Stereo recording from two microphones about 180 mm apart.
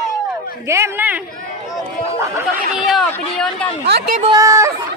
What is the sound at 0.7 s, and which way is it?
A woman's voice, 15° right (ahead or behind).